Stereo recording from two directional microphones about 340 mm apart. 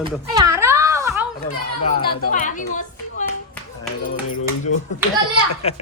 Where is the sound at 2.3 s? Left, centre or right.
Left.